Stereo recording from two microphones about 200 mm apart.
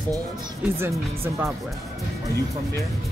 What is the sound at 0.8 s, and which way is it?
Speech, 10° right (ahead or behind).